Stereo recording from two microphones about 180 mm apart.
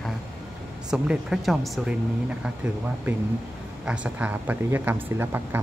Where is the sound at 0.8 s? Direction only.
5° right (ahead or behind).